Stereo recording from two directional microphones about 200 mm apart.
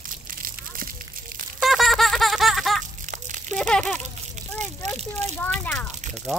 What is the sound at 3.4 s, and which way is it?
Crumpling, 5° left (ahead or behind).